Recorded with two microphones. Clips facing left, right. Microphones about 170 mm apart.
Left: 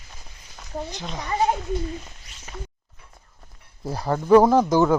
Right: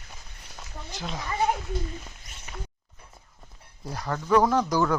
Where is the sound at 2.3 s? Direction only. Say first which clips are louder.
Right 2 dB; 45° right (ahead or behind).